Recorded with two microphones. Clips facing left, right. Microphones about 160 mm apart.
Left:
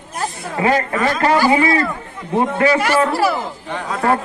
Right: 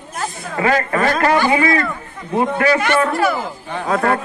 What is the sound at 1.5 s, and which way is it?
Speech, 30° left (ahead or behind).